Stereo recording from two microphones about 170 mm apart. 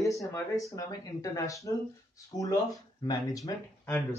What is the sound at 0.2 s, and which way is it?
Speech, 20° left (ahead or behind).